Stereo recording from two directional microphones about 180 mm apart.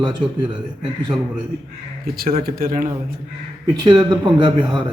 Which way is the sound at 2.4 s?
55° right (ahead or behind).